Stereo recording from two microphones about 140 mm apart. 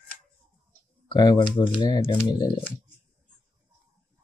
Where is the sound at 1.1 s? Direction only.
30° left (ahead or behind).